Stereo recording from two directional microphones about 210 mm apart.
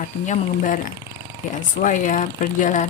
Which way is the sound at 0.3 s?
40° left (ahead or behind).